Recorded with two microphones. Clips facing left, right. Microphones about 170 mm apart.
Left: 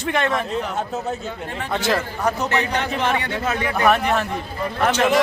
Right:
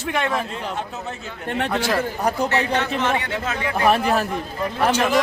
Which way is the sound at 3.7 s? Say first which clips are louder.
Right 1 dB; 30° right (ahead or behind).